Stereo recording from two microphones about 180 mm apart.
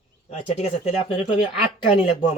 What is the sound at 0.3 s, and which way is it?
Speech, 40° left (ahead or behind).